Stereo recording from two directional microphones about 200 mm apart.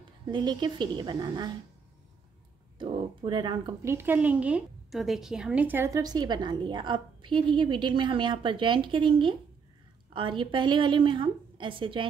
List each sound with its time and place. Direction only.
0.3 s a woman's voice: 20° right (ahead or behind)
2.8 s a woman's voice: 25° right (ahead or behind)